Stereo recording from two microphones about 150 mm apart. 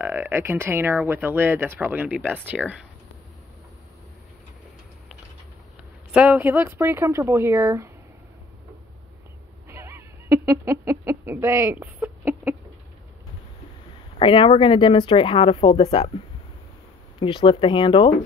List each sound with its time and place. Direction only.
0.0 s speech: 15° right (ahead or behind)
6.1 s speech: 10° right (ahead or behind)
9.7 s a sound: 15° right (ahead or behind)
14.1 s speech: 35° left (ahead or behind)
17.2 s speech: 35° left (ahead or behind)